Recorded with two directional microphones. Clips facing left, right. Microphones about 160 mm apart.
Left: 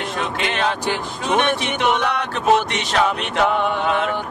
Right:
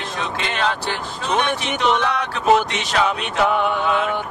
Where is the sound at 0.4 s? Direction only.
15° left (ahead or behind).